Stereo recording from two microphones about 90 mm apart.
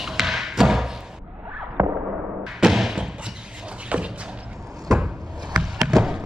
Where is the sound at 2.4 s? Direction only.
5° right (ahead or behind).